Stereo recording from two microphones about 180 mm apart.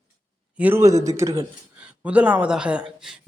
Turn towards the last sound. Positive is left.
turn(degrees=-5)  # may be behind; listen again after turning